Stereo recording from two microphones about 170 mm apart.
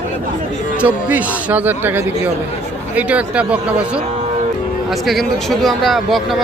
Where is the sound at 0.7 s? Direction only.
10° right (ahead or behind).